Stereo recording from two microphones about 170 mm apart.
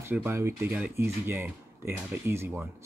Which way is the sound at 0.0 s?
15° right (ahead or behind).